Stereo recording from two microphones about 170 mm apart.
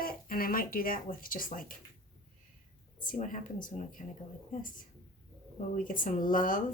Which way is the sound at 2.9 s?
50° left (ahead or behind).